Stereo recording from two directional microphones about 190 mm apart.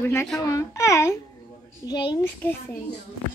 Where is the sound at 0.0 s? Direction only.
10° left (ahead or behind).